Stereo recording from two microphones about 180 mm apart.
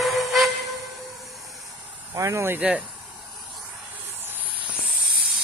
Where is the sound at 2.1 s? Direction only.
15° right (ahead or behind).